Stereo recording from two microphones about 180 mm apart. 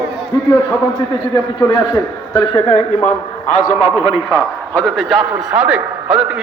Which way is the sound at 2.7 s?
40° left (ahead or behind).